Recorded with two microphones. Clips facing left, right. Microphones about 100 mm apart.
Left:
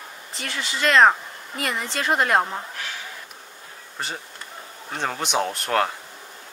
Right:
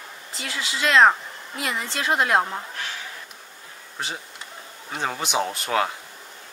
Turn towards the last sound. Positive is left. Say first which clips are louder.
# left 1 dB
turn(degrees=0)  # may be behind; listen again after turning